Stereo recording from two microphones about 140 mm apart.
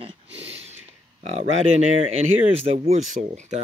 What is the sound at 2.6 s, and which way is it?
Speech, 45° right (ahead or behind).